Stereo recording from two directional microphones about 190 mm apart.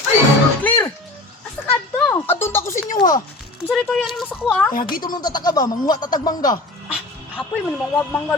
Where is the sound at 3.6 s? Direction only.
Centre (ahead or behind).